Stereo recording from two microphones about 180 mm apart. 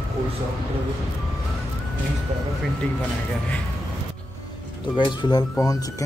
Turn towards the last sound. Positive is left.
turn(degrees=20)  # may be behind; listen again after turning